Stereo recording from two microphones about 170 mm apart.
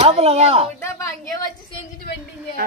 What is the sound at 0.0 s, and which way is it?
Speech, 35° right (ahead or behind).